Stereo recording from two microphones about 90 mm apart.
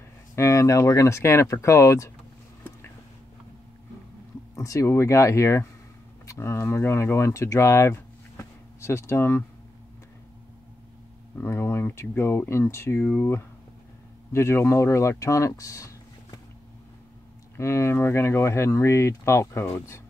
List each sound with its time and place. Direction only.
0.4 s speech: 35° left (ahead or behind)
4.6 s speech: 35° left (ahead or behind)
11.4 s speech: 25° left (ahead or behind)
17.6 s speech: 30° left (ahead or behind)